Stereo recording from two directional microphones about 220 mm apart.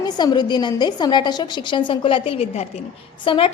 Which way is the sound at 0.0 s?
20° left (ahead or behind).